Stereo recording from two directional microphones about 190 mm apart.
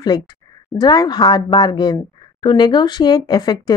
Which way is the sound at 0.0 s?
20° left (ahead or behind).